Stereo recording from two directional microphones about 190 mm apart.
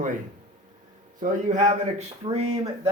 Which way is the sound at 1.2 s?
40° right (ahead or behind).